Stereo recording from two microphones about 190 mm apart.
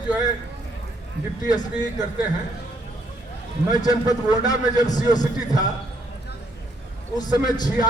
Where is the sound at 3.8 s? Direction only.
20° left (ahead or behind).